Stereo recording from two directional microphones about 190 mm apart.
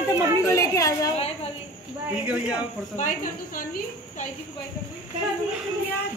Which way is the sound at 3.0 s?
40° left (ahead or behind).